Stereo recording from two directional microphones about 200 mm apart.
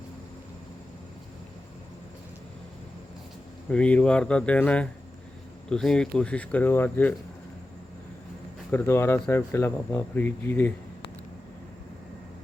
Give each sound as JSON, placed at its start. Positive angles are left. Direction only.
{"t": 3.7, "sound": "speech", "side_deg": 5}
{"t": 8.7, "sound": "speech", "side_deg": 10}